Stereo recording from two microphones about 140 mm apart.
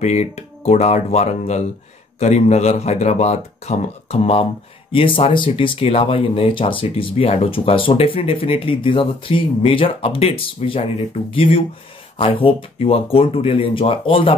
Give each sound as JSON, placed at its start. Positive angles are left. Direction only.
{"t": 0.0, "sound": "speech", "side_deg": 55}